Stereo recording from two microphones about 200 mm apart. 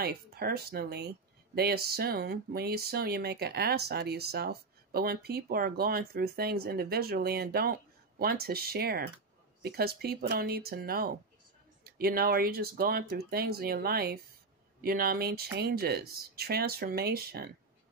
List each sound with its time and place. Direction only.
0.0 s speech: 50° right (ahead or behind)